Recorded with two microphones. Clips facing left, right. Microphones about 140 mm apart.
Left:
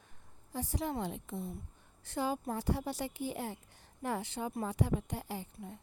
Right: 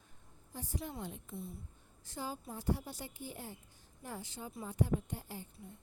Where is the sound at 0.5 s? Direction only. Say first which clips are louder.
Left 7 dB; 85° left.